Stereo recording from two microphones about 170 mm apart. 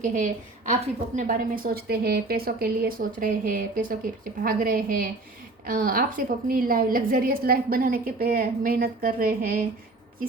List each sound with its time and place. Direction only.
0.0 s a woman's voice: 50° right (ahead or behind)